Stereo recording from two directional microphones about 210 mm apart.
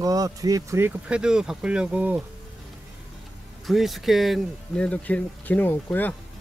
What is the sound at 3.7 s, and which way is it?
Speech, centre (ahead or behind).